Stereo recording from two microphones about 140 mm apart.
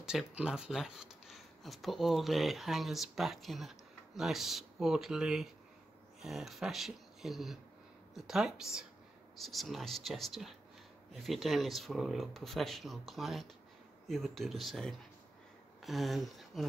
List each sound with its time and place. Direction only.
0.0 s speech: 5° right (ahead or behind)